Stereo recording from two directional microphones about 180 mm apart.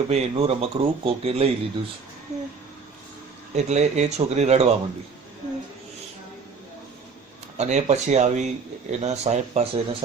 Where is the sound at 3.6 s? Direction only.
40° right (ahead or behind).